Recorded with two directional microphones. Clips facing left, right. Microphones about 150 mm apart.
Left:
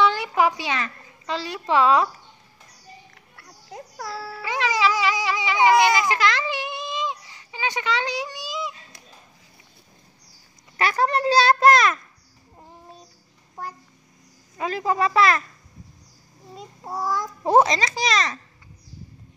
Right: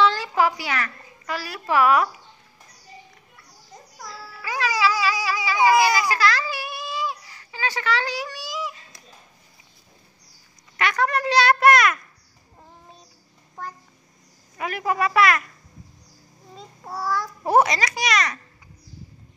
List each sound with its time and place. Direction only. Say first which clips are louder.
0.0 s a child's voice: even; 15° left (ahead or behind)
3.3 s music: left 8 dB; 70° left (ahead or behind)
4.4 s cat: even; 25° left (ahead or behind)
10.8 s a child's voice: left 1 dB; 30° left (ahead or behind)
14.6 s a child's voice: left 1 dB; 25° left (ahead or behind)
16.5 s a child's voice: left 2 dB; 15° left (ahead or behind)